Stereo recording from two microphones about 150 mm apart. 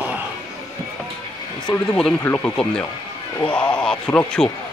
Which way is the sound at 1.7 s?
5° left (ahead or behind).